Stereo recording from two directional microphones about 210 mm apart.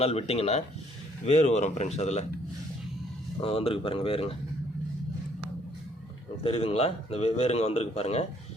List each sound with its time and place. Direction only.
0.0 s speech: 30° left (ahead or behind)
3.4 s speech: 25° left (ahead or behind)
6.4 s speech: 30° left (ahead or behind)